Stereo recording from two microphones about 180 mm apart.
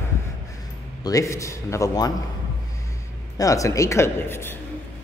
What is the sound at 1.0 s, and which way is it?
Speech, 15° left (ahead or behind).